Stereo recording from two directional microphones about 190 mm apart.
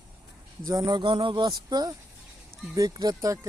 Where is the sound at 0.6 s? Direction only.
20° right (ahead or behind).